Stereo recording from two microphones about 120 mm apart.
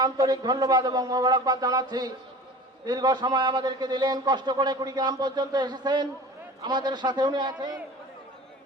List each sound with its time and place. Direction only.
0.0 s a man's voice: 35° right (ahead or behind)